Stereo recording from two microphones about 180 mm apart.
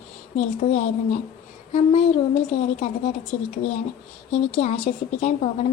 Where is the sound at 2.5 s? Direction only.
35° left (ahead or behind).